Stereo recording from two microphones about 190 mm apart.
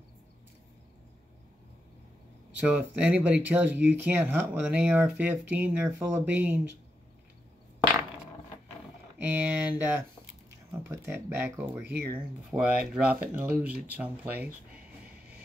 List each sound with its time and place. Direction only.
2.5 s speech: 5° right (ahead or behind)
9.2 s speech: 10° right (ahead or behind)